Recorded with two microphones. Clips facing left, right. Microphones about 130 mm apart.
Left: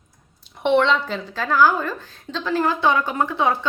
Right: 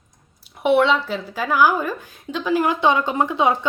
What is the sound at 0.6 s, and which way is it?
A woman's voice, 5° right (ahead or behind).